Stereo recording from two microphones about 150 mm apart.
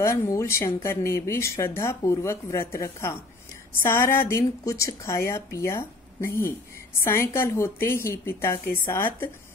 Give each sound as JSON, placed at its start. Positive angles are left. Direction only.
{"t": 0.0, "sound": "a woman's voice", "side_deg": 20}